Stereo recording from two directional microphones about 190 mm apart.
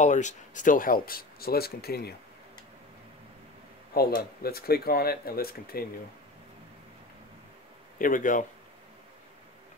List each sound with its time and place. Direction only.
0.0 s speech: 40° left (ahead or behind); by 2.1 s 55° left (ahead or behind)
3.9 s speech: 55° left (ahead or behind)
8.0 s speech: 45° left (ahead or behind)